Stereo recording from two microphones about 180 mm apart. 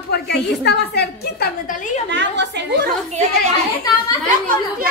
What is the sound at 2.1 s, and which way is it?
Speech, 75° right (ahead or behind).